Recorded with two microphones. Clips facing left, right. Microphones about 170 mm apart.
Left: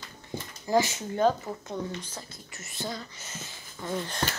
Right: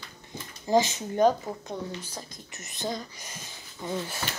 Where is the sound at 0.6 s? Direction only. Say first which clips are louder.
Right 2 dB; 20° right (ahead or behind).